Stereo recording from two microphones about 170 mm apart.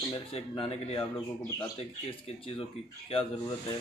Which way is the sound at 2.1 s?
30° left (ahead or behind).